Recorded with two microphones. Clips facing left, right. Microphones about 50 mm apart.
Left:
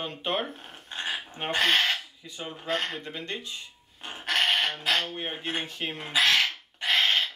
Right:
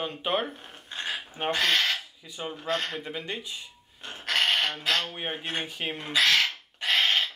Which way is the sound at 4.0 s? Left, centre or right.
Left.